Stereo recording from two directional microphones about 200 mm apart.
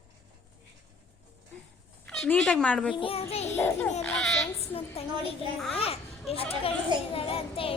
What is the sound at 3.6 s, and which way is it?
Speech, 5° left (ahead or behind).